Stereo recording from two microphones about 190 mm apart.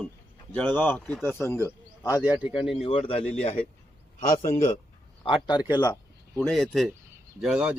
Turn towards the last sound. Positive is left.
turn(degrees=-5)  # may be behind; listen again after turning